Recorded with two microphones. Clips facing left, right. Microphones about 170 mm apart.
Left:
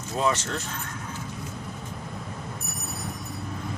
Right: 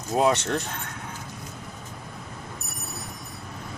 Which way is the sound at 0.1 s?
65° right (ahead or behind).